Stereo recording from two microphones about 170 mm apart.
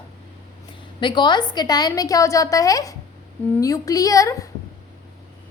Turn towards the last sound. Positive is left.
turn(degrees=20)  # may be behind; listen again after turning